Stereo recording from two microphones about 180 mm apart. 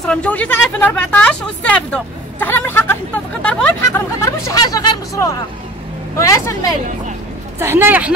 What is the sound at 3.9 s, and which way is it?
Speech, 15° left (ahead or behind).